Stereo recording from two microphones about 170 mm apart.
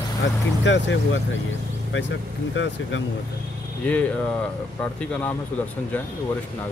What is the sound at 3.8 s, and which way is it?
Speech, 5° left (ahead or behind).